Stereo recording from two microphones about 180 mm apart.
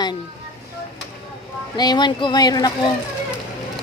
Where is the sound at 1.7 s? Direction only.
25° left (ahead or behind).